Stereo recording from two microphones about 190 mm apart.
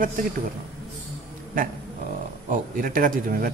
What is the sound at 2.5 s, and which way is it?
A man's voice, 45° right (ahead or behind).